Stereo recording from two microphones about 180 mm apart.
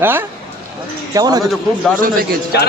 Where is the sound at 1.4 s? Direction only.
Centre (ahead or behind).